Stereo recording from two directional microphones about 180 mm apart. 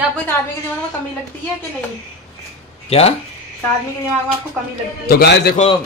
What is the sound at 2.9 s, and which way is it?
Speech, 35° left (ahead or behind).